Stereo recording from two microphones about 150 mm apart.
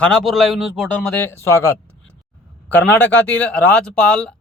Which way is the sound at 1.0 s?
15° left (ahead or behind).